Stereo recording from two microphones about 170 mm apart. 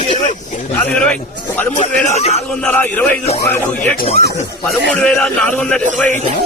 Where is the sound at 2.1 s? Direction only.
40° left (ahead or behind).